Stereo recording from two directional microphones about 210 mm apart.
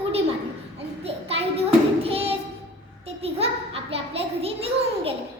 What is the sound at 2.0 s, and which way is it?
Child singing, 25° right (ahead or behind).